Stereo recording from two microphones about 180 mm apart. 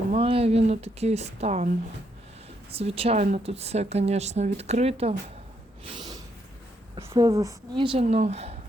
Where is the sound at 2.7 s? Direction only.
35° right (ahead or behind).